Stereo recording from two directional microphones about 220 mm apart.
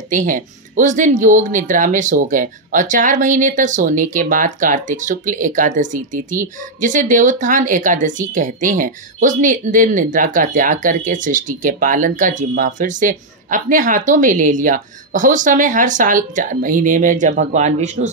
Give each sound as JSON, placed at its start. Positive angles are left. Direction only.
{"t": 0.1, "sound": "speech", "side_deg": -35}